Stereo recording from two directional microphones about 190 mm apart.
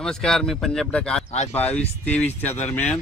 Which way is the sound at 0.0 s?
5° left (ahead or behind).